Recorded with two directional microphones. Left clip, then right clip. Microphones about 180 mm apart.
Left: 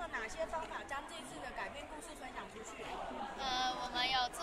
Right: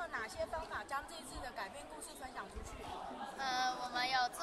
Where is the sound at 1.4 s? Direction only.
5° left (ahead or behind).